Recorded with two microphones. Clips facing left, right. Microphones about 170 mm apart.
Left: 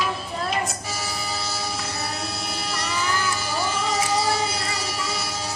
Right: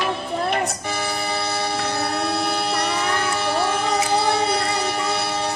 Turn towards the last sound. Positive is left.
turn(degrees=-60)  # may be behind; listen again after turning